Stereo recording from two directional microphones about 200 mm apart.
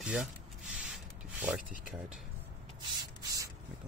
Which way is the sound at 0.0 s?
5° right (ahead or behind).